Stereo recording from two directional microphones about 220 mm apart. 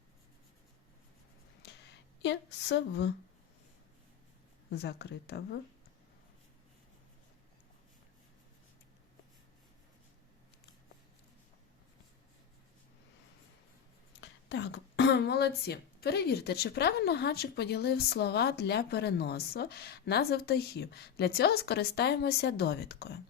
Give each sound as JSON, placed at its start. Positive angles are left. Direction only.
{"t": 1.6, "sound": "a sound", "side_deg": 50}
{"t": 2.2, "sound": "speech", "side_deg": 55}
{"t": 4.7, "sound": "speech", "side_deg": 50}
{"t": 14.2, "sound": "speech", "side_deg": 55}